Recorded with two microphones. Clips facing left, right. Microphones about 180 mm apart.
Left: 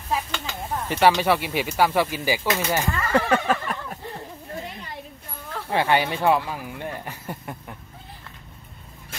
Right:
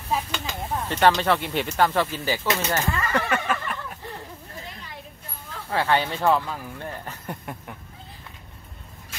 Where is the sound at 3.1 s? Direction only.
35° left (ahead or behind).